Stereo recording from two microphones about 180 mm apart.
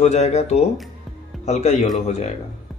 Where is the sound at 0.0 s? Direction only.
35° left (ahead or behind).